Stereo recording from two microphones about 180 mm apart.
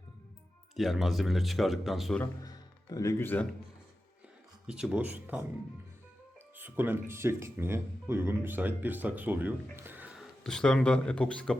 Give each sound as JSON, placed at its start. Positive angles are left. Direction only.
{"t": 0.8, "sound": "speech", "side_deg": 0}
{"t": 2.4, "sound": "speech", "side_deg": 20}
{"t": 4.6, "sound": "speech", "side_deg": -5}
{"t": 6.6, "sound": "speech", "side_deg": -10}